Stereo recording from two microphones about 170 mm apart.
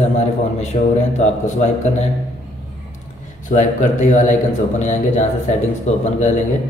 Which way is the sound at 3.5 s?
45° left (ahead or behind).